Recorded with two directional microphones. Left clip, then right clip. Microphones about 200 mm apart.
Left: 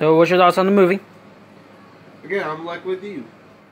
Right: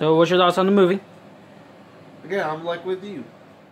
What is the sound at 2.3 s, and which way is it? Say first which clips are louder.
Speech: even; 10° right (ahead or behind).